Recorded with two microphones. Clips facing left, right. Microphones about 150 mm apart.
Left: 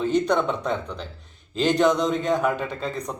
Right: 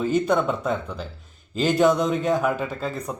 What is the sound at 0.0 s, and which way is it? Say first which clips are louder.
A man's voice: even; 5° right (ahead or behind).